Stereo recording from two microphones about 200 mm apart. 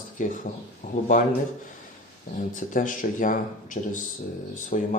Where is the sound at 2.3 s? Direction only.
45° left (ahead or behind).